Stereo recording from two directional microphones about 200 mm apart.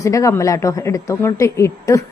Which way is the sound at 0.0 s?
15° left (ahead or behind).